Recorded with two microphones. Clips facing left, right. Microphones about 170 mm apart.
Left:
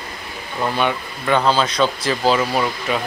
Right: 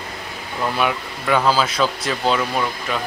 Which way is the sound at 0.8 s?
5° right (ahead or behind).